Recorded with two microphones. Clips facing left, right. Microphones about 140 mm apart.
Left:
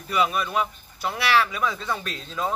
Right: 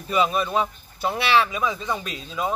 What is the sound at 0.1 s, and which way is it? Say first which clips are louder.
Speech: right 2 dB; 25° right (ahead or behind).